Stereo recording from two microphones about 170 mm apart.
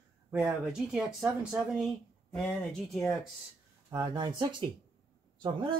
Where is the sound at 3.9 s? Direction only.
20° right (ahead or behind).